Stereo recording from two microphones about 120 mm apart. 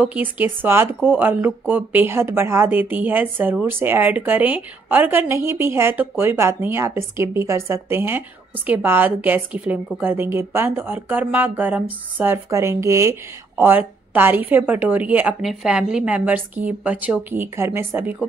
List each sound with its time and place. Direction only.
0.0 s speech: 15° right (ahead or behind)